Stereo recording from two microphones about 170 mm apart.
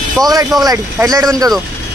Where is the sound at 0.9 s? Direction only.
20° right (ahead or behind).